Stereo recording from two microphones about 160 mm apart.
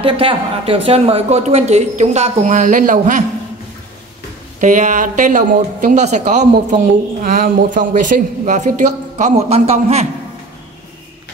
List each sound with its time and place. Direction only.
0.0 s a woman's voice: 35° right (ahead or behind); by 3.3 s 55° right (ahead or behind)
4.6 s a woman's voice: 50° right (ahead or behind)
6.5 s a woman's voice: 60° right (ahead or behind); by 10.0 s 40° right (ahead or behind)